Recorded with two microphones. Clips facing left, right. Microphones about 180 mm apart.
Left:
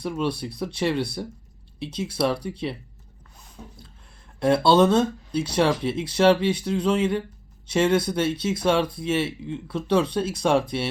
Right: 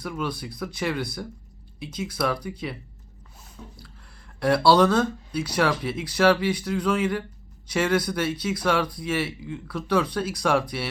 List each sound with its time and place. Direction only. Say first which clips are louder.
0.0 s speech: left 4 dB; 25° left (ahead or behind)
4.4 s speech: left 1 dB; 20° left (ahead or behind)